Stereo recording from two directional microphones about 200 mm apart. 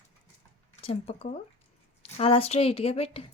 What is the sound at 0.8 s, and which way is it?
A woman's voice, 30° left (ahead or behind).